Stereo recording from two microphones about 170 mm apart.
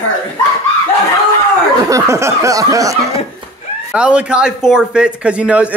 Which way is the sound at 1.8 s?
20° right (ahead or behind).